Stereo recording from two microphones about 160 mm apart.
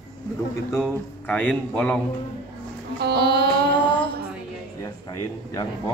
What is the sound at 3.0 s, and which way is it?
Music, 90° right.